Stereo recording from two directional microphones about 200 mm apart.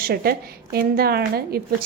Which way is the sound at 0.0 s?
50° right (ahead or behind).